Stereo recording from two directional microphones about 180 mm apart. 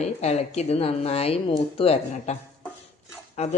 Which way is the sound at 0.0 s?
35° left (ahead or behind).